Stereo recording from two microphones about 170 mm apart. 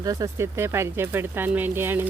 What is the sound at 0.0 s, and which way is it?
Speech, 20° right (ahead or behind).